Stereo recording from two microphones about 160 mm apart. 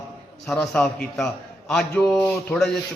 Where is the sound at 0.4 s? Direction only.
5° left (ahead or behind).